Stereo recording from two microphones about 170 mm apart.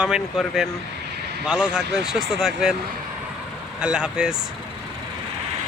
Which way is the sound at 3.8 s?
5° right (ahead or behind).